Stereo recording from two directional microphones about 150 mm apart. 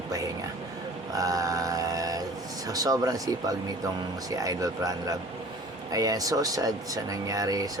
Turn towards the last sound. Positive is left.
turn(degrees=-25)  # may be behind; listen again after turning